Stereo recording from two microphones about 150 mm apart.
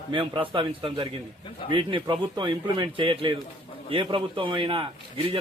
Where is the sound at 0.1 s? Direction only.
35° right (ahead or behind).